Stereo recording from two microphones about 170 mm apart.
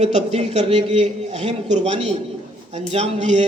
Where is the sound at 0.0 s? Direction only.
40° right (ahead or behind).